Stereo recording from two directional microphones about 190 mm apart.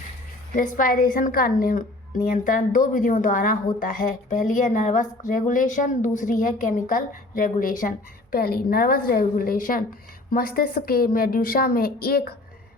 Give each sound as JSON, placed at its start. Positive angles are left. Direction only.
{"t": 0.5, "sound": "speech", "side_deg": 45}